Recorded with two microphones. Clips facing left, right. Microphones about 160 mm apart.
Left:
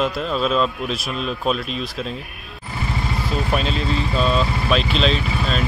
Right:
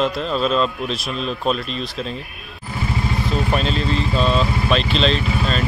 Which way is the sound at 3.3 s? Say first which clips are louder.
Right 1 dB; centre (ahead or behind).